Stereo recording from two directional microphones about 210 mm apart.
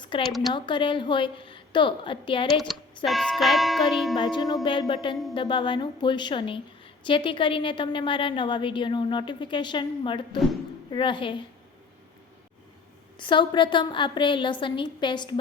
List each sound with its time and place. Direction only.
0.1 s a woman's voice: 25° left (ahead or behind)
3.1 s a sound: centre (ahead or behind)
4.2 s a woman's voice: 20° left (ahead or behind)
13.1 s a woman's voice: 20° left (ahead or behind)